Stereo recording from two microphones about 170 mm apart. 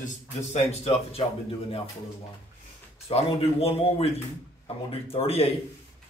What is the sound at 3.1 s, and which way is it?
A man's voice, 35° left (ahead or behind).